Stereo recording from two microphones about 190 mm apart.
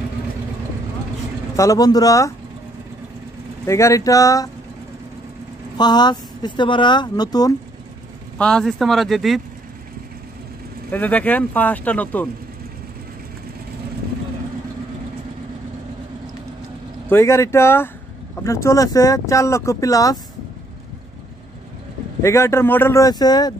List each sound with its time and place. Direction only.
1.6 s speech: 20° left (ahead or behind)
3.6 s speech: 15° left (ahead or behind)
5.8 s speech: 20° left (ahead or behind)
8.4 s speech: 5° left (ahead or behind)
10.9 s speech: 10° left (ahead or behind)
17.1 s speech: 15° left (ahead or behind)
22.2 s speech: 15° left (ahead or behind)